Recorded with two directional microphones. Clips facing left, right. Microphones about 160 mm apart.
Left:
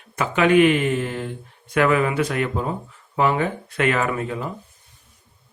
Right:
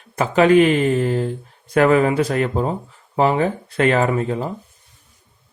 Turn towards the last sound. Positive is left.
turn(degrees=-35)  # may be behind; listen again after turning